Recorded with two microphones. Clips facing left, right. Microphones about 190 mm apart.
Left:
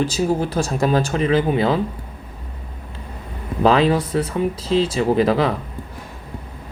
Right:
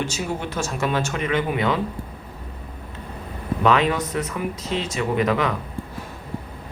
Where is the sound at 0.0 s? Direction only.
35° left (ahead or behind).